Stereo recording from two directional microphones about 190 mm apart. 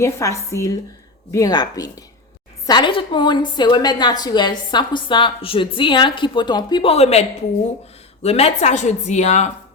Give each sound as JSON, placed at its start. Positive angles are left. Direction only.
{"t": 0.0, "sound": "a woman's voice", "side_deg": 15}